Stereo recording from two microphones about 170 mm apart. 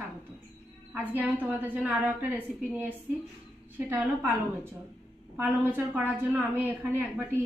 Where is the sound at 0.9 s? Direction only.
10° right (ahead or behind).